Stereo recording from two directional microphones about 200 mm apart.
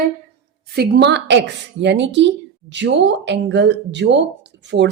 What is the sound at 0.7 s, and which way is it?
Speech, 55° right (ahead or behind).